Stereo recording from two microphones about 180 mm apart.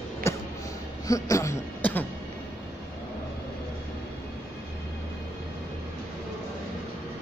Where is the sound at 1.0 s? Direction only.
20° left (ahead or behind).